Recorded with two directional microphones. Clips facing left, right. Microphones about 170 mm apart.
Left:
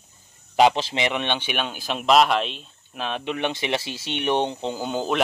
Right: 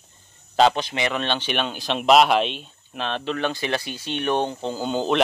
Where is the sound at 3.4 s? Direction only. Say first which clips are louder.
Left 1 dB; 20° left (ahead or behind).